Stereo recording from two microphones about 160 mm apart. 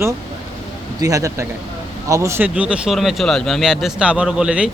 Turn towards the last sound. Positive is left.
turn(degrees=-5)  # may be behind; listen again after turning